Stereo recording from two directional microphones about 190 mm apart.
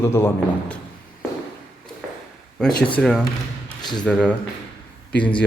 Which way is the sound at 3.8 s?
20° left (ahead or behind).